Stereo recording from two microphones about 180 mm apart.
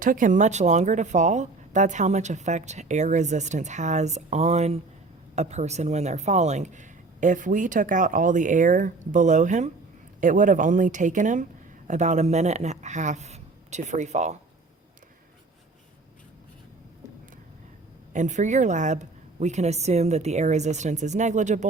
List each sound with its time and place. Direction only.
0.0 s speech: 50° right (ahead or behind)
18.1 s speech: 40° right (ahead or behind)